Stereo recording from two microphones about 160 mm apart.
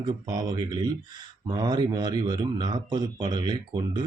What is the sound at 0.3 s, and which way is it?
Speech, 25° right (ahead or behind).